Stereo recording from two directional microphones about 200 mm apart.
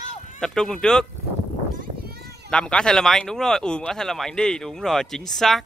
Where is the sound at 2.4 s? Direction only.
5° left (ahead or behind).